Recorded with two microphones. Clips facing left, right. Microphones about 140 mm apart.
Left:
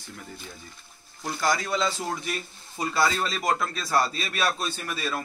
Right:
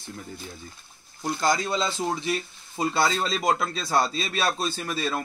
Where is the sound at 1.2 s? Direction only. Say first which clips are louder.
Right 2 dB; 20° right (ahead or behind).